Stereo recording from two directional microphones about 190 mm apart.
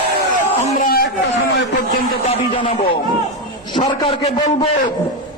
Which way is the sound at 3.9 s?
25° left (ahead or behind).